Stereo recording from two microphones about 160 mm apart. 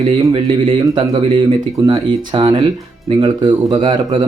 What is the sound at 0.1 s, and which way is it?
Speech, 30° right (ahead or behind).